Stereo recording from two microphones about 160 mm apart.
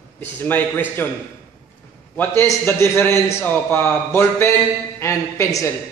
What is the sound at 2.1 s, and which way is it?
A man's voice, 15° left (ahead or behind).